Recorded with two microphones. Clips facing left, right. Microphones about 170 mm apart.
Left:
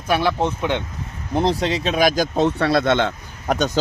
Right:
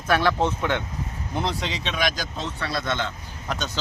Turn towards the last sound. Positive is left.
turn(degrees=50)  # may be behind; listen again after turning